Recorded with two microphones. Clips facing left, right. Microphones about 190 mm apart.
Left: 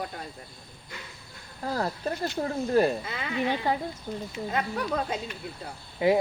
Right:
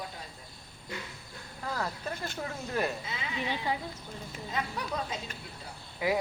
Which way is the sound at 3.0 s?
55° left (ahead or behind).